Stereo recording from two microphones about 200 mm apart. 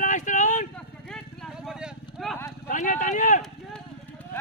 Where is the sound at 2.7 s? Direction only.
40° left (ahead or behind).